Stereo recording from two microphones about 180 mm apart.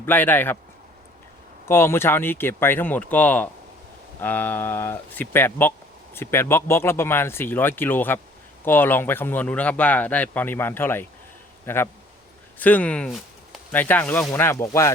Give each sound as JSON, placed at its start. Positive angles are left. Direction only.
{"t": 0.0, "sound": "speech", "side_deg": 10}
{"t": 1.6, "sound": "speech", "side_deg": 15}
{"t": 12.5, "sound": "a sound", "side_deg": 10}
{"t": 13.7, "sound": "speech", "side_deg": 10}